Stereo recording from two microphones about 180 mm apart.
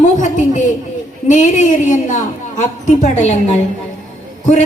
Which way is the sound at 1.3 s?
45° left (ahead or behind).